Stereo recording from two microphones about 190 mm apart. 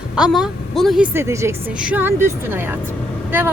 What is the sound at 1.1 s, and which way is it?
Speech, 15° right (ahead or behind).